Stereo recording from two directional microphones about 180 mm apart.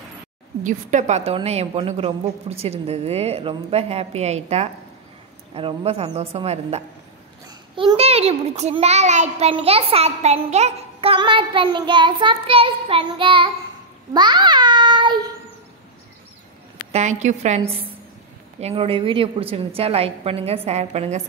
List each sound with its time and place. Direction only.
0.7 s a child's voice: 45° right (ahead or behind); by 13.5 s 30° right (ahead or behind)
14.1 s babbling: 25° right (ahead or behind)
16.9 s a child's voice: 40° right (ahead or behind)